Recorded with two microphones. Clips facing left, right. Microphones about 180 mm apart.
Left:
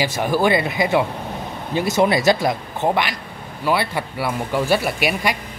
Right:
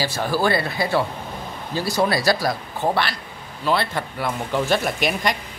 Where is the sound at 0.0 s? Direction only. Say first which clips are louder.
Left 3 dB; 20° left (ahead or behind).